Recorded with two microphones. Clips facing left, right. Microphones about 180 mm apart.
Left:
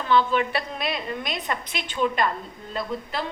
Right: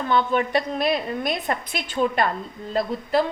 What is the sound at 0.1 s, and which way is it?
A woman's voice, 45° right (ahead or behind).